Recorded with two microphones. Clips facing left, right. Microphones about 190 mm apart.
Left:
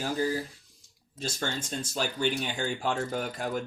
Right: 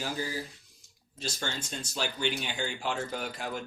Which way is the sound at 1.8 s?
45° left (ahead or behind).